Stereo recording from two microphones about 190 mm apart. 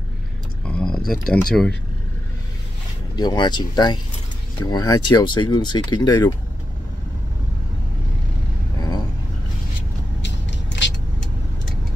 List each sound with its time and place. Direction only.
0.7 s speech: 5° left (ahead or behind)
3.2 s speech: 20° left (ahead or behind)
10.2 s vehicle: 70° left (ahead or behind)